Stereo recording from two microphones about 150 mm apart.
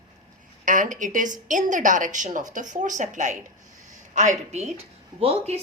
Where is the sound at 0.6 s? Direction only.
60° right (ahead or behind).